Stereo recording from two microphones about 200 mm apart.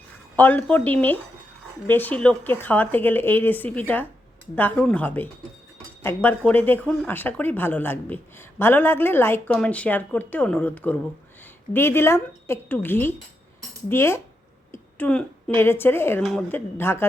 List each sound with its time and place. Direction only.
0.3 s a woman's voice: 10° left (ahead or behind)